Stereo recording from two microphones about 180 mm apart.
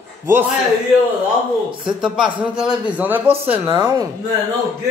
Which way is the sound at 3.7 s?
20° right (ahead or behind).